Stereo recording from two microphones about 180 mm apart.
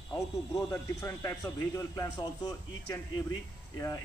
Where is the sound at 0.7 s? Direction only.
15° left (ahead or behind).